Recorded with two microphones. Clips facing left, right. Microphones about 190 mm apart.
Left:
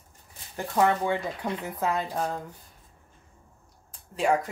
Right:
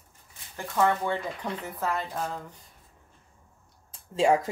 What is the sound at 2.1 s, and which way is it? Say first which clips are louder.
Speech: left 3 dB; 35° left (ahead or behind).